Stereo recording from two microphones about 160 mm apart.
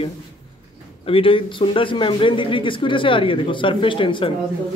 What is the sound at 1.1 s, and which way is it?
A man's voice, 35° left (ahead or behind).